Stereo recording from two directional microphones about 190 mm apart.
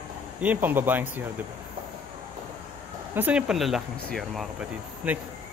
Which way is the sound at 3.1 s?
5° right (ahead or behind).